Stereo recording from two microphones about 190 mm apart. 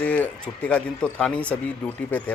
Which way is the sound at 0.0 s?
5° left (ahead or behind).